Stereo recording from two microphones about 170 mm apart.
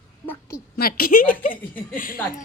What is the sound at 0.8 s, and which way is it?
Speech, 60° left (ahead or behind).